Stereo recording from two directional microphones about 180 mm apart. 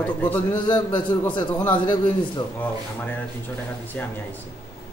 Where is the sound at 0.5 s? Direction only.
25° left (ahead or behind).